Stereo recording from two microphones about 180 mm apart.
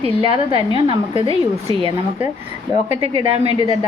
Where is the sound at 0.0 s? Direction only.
30° right (ahead or behind).